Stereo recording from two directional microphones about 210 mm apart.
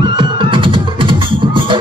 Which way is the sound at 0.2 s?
25° right (ahead or behind).